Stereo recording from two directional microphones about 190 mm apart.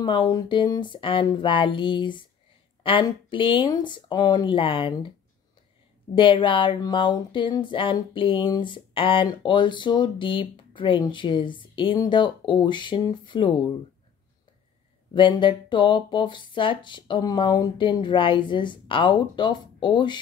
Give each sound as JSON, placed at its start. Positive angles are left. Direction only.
{"t": 0.0, "sound": "speech", "side_deg": 25}
{"t": 6.1, "sound": "speech", "side_deg": 25}
{"t": 15.1, "sound": "speech", "side_deg": 25}